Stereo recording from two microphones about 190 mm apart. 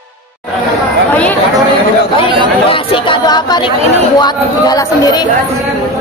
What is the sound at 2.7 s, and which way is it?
Chatter, 25° left (ahead or behind).